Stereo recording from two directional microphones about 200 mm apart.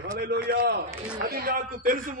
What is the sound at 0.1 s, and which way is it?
Speech, 50° right (ahead or behind).